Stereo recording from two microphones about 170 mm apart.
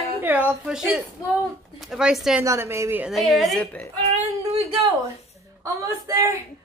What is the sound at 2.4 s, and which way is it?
Speech, 15° right (ahead or behind).